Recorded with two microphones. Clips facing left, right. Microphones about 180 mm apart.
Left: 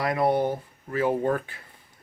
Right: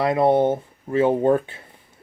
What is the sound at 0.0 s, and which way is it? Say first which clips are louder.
Speech: right 6 dB; 25° right (ahead or behind).